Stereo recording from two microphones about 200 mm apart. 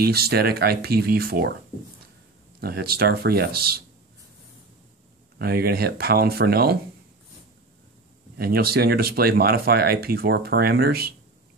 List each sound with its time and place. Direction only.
0.0 s speech: 50° right (ahead or behind)
2.6 s speech: 50° right (ahead or behind)
5.4 s speech: 50° right (ahead or behind)
8.4 s speech: 50° right (ahead or behind)